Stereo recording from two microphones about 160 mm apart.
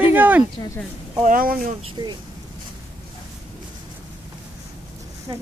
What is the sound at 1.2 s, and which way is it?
Speech, 60° right (ahead or behind).